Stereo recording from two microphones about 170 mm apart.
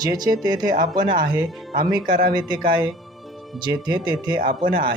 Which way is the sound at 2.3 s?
25° right (ahead or behind).